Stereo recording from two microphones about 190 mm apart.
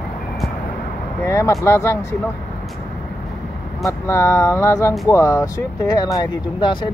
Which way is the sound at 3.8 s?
15° left (ahead or behind).